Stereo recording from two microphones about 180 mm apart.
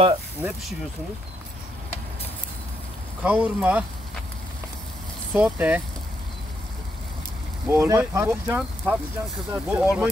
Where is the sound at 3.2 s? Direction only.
10° right (ahead or behind).